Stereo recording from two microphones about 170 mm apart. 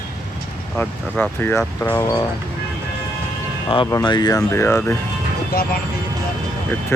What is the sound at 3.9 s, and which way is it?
Speech, 20° left (ahead or behind).